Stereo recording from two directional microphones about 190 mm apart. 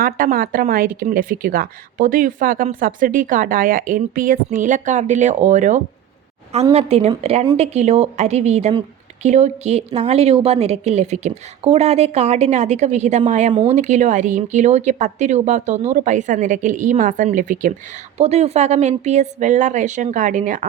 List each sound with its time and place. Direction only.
0.0 s a woman's voice: 50° right (ahead or behind)
13.5 s speech: 25° right (ahead or behind)
13.7 s speech: 40° right (ahead or behind)